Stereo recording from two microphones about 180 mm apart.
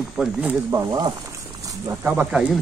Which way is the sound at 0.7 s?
20° right (ahead or behind).